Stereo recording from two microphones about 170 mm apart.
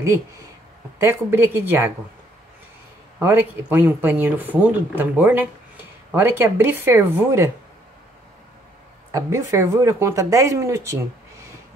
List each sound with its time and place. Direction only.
0.0 s speech: 15° right (ahead or behind)
3.2 s speech: 10° right (ahead or behind)
9.1 s speech: 15° right (ahead or behind)